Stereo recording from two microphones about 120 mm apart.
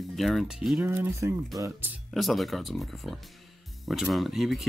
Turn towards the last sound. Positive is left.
turn(degrees=0)  # may be behind; listen again after turning